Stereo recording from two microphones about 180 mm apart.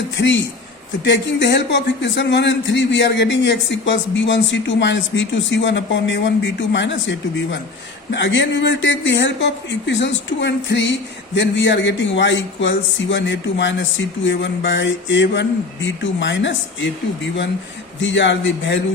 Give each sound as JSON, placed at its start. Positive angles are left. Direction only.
{"t": 0.2, "sound": "a man's voice", "side_deg": 80}
{"t": 18.0, "sound": "speech", "side_deg": 85}